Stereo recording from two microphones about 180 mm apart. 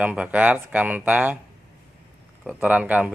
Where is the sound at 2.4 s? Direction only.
5° right (ahead or behind).